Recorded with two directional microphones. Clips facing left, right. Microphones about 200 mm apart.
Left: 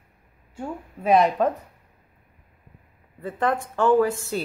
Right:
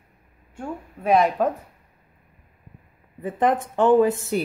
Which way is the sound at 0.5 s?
Centre (ahead or behind).